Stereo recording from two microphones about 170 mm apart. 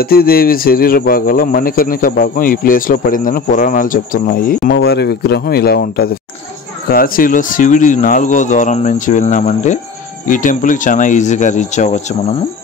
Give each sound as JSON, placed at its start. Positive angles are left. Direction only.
{"t": 0.0, "sound": "speech", "side_deg": 60}
{"t": 4.7, "sound": "speech", "side_deg": 75}